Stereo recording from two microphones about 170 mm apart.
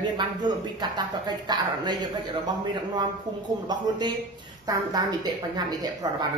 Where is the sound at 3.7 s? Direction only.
25° right (ahead or behind).